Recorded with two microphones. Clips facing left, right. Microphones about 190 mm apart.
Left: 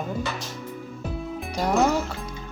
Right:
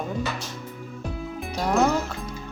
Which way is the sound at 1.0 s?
Centre (ahead or behind).